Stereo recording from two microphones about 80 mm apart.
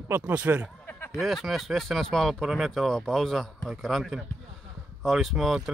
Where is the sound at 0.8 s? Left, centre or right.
Left.